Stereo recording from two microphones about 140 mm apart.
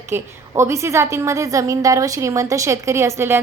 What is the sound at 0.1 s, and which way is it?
A woman's voice, 20° right (ahead or behind).